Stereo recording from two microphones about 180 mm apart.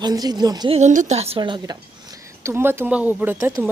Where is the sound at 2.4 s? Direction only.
15° right (ahead or behind).